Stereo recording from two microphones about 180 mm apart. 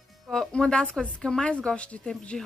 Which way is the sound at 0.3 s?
5° left (ahead or behind).